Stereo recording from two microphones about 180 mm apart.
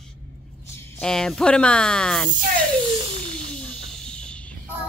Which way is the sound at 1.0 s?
5° left (ahead or behind).